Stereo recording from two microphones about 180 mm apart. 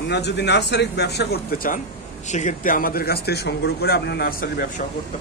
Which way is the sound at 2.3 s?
40° left (ahead or behind).